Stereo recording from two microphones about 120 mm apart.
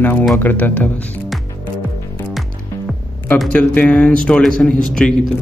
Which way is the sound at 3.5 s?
10° left (ahead or behind).